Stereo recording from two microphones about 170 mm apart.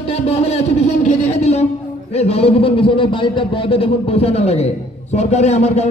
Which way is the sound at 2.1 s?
40° left (ahead or behind).